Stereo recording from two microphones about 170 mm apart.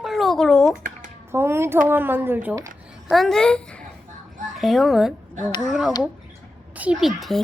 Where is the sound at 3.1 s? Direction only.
Centre (ahead or behind).